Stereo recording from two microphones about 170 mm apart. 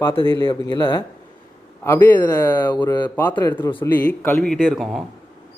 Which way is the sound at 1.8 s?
10° left (ahead or behind).